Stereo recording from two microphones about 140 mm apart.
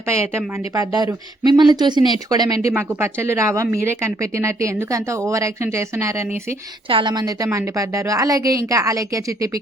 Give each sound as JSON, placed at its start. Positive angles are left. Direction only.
{"t": 0.1, "sound": "speech", "side_deg": -20}
{"t": 2.6, "sound": "speech", "side_deg": -20}
{"t": 6.8, "sound": "speech", "side_deg": -35}